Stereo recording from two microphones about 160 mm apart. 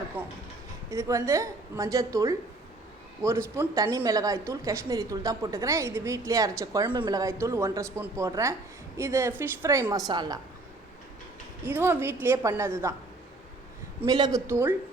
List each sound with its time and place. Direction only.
0.2 s a woman's voice: 10° right (ahead or behind)
0.9 s a woman's voice: 20° right (ahead or behind)
11.6 s a woman's voice: 15° right (ahead or behind)
14.0 s a woman's voice: 25° right (ahead or behind)